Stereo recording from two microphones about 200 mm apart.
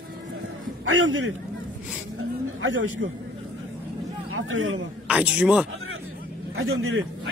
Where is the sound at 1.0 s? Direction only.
75° right (ahead or behind).